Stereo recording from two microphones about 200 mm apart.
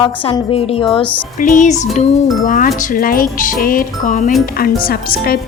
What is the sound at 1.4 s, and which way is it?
Music, 40° left (ahead or behind).